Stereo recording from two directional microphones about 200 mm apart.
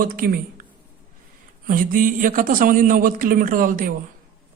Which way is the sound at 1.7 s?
45° right (ahead or behind).